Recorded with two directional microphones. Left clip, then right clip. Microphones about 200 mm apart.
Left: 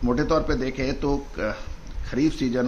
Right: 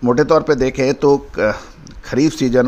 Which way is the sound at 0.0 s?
55° right (ahead or behind).